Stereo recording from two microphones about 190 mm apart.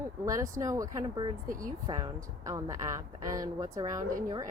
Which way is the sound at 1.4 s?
45° right (ahead or behind).